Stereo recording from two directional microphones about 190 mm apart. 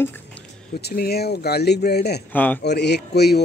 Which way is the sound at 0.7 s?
55° left (ahead or behind).